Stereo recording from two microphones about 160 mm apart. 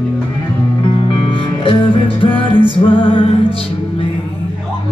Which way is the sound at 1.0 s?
35° left (ahead or behind).